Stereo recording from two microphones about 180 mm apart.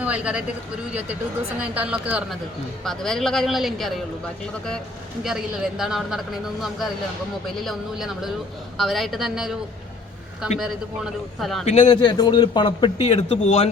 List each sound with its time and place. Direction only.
0.0 s speech: 5° right (ahead or behind)
1.5 s a woman's voice: 5° right (ahead or behind)
5.2 s speech: 5° right (ahead or behind)
10.6 s speech: centre (ahead or behind)
11.6 s a man's voice: 40° left (ahead or behind)
11.9 s a man's voice: 25° left (ahead or behind)
13.0 s a man's voice: 35° left (ahead or behind)